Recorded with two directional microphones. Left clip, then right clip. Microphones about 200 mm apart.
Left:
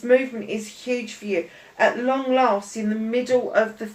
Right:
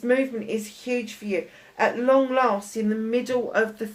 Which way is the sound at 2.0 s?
50° right (ahead or behind).